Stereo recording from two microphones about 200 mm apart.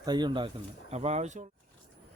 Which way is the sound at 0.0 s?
20° right (ahead or behind).